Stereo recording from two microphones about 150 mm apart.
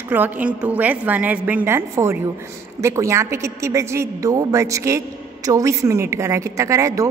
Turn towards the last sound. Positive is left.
turn(degrees=-20)  # may be behind; listen again after turning